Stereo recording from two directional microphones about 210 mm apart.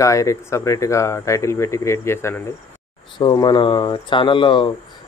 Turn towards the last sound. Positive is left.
turn(degrees=25)  # may be behind; listen again after turning